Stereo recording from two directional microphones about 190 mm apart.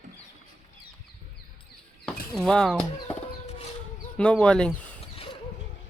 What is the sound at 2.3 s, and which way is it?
Speech, centre (ahead or behind).